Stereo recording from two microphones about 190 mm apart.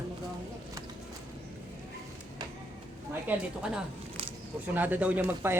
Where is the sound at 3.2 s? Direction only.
5° right (ahead or behind).